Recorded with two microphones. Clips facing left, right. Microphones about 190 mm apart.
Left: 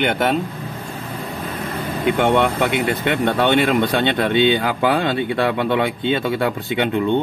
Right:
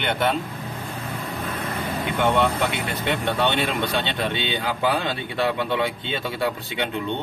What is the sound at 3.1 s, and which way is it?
Speech, 50° left (ahead or behind).